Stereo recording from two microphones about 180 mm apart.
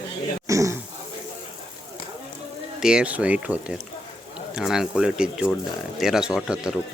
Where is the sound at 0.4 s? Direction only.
15° right (ahead or behind).